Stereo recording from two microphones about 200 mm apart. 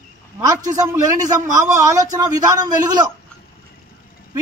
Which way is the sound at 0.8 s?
15° right (ahead or behind).